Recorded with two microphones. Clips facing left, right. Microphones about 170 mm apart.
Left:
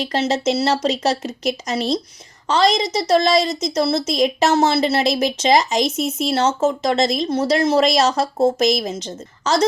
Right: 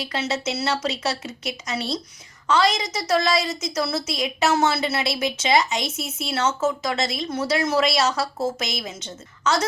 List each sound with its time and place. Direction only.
0.0 s a woman's voice: 40° left (ahead or behind)